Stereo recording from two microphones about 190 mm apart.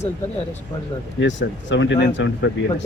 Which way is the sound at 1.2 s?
75° left (ahead or behind).